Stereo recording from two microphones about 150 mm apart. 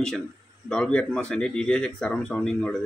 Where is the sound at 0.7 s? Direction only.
5° left (ahead or behind).